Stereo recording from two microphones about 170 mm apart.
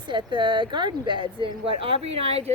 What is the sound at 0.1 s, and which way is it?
Speech, 30° right (ahead or behind).